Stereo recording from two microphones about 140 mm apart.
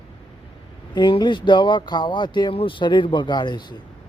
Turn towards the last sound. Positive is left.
turn(degrees=35)  # may be behind; listen again after turning